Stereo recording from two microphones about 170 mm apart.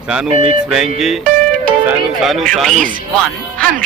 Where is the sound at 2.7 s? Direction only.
50° right (ahead or behind).